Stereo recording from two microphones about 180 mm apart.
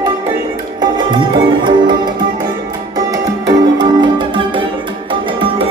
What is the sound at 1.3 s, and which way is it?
Music, 25° right (ahead or behind).